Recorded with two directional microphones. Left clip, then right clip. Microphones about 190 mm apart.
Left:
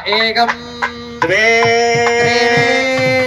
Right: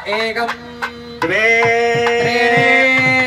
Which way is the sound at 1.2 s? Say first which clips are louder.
Left 2 dB; 25° right (ahead or behind).